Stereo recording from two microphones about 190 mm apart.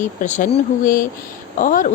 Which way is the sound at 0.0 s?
40° left (ahead or behind).